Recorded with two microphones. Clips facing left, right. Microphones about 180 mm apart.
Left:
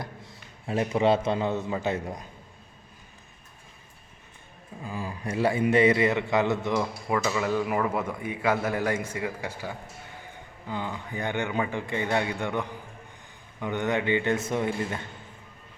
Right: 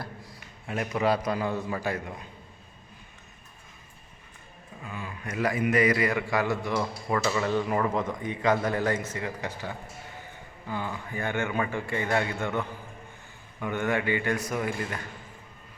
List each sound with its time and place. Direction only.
0.0 s a man's voice: 25° left (ahead or behind)
4.8 s a man's voice: 35° left (ahead or behind)